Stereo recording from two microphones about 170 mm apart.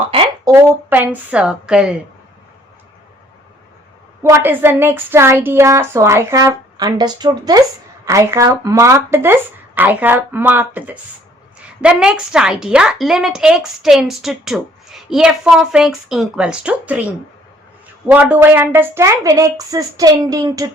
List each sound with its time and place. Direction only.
0.4 s a woman's voice: 15° right (ahead or behind)
4.2 s a woman's voice: 15° right (ahead or behind)
18.1 s a woman's voice: 10° right (ahead or behind)